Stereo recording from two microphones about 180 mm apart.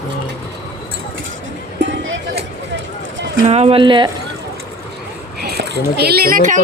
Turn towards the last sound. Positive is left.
turn(degrees=-50)  # may be behind; listen again after turning